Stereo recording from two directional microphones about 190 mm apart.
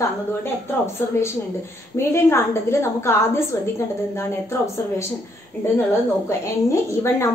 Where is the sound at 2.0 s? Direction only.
15° left (ahead or behind).